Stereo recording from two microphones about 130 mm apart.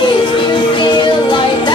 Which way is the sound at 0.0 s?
35° left (ahead or behind).